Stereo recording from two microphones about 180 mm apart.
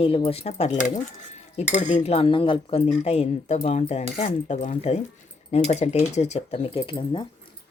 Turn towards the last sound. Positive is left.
turn(degrees=25)  # may be behind; listen again after turning